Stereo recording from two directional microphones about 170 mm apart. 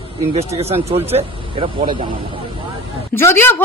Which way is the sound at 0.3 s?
35° right (ahead or behind).